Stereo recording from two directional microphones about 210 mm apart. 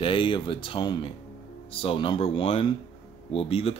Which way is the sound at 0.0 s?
25° left (ahead or behind).